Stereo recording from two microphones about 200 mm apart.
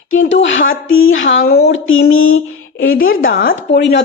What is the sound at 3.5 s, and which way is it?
Speech, 60° left (ahead or behind).